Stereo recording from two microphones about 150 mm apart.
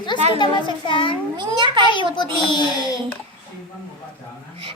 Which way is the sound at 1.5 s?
30° right (ahead or behind).